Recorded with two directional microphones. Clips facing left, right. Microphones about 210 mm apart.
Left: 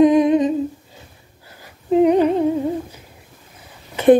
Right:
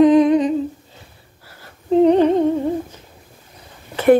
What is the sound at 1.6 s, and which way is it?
Humming, 10° left (ahead or behind).